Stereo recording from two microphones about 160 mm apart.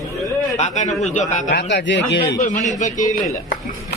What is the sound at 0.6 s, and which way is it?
Speech, 45° left (ahead or behind).